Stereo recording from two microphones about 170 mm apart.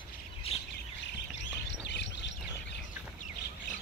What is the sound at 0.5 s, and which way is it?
Bird, 35° left (ahead or behind).